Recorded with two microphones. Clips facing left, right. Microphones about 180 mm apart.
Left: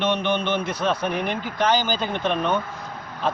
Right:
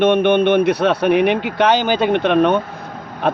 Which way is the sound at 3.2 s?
60° right (ahead or behind).